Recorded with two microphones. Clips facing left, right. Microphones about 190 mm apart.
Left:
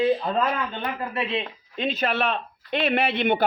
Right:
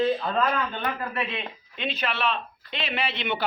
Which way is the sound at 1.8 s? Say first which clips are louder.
Left 3 dB; 45° left (ahead or behind).